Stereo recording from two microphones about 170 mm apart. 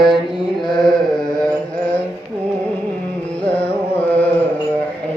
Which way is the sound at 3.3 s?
10° left (ahead or behind).